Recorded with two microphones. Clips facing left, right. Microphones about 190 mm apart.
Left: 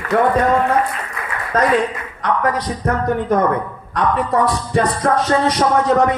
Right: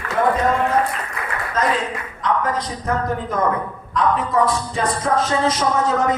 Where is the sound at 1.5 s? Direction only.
65° left (ahead or behind).